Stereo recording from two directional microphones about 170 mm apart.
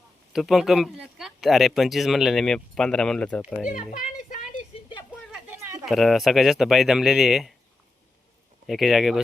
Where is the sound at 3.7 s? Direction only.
55° left (ahead or behind).